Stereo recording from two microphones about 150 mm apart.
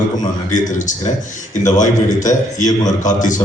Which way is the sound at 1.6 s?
55° left (ahead or behind).